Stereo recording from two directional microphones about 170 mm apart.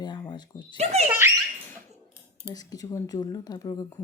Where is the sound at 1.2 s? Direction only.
15° right (ahead or behind).